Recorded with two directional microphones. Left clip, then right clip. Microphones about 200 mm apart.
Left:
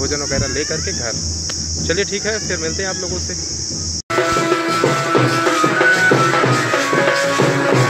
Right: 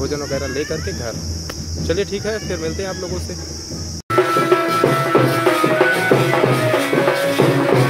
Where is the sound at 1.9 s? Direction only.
5° right (ahead or behind).